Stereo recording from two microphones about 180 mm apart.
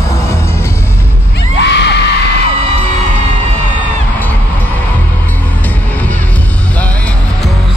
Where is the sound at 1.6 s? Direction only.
70° left (ahead or behind).